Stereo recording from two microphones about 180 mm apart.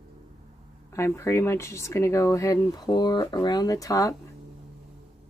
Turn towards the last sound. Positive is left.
turn(degrees=20)  # may be behind; listen again after turning